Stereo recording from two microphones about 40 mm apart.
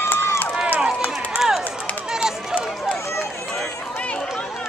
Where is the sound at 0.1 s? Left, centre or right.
Left.